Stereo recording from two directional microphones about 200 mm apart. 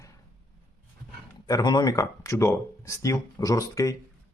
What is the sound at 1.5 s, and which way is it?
Speech, 20° left (ahead or behind).